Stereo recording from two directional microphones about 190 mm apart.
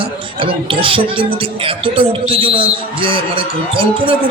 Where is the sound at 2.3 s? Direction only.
30° right (ahead or behind).